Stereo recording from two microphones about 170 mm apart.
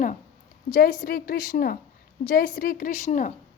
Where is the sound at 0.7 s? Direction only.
50° left (ahead or behind).